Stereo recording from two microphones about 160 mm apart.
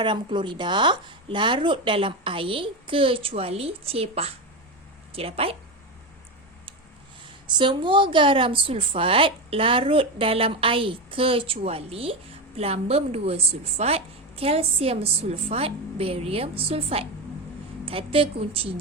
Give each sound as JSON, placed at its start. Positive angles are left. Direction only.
{"t": 0.0, "sound": "a woman's voice", "side_deg": -30}
{"t": 7.4, "sound": "a woman's voice", "side_deg": -30}